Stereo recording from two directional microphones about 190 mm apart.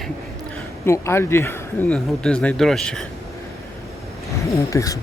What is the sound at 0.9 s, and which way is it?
Speech, 15° left (ahead or behind).